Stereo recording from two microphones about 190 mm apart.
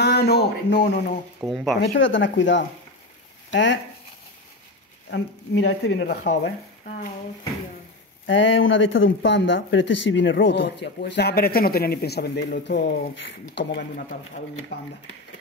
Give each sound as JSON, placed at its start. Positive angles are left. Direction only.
{"t": 0.0, "sound": "speech", "side_deg": 60}
{"t": 1.4, "sound": "speech", "side_deg": 0}
{"t": 1.8, "sound": "speech", "side_deg": 80}
{"t": 5.1, "sound": "speech", "side_deg": 70}
{"t": 8.3, "sound": "speech", "side_deg": 80}